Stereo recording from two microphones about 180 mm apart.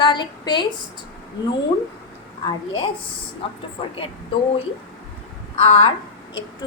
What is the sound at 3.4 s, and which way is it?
Speech, 30° left (ahead or behind).